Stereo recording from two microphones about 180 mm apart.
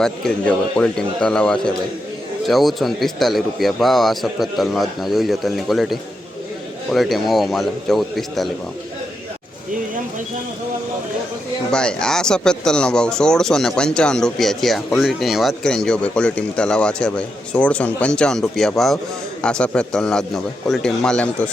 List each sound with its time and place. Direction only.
0.0 s speech: 5° left (ahead or behind)
11.7 s speech: 5° left (ahead or behind)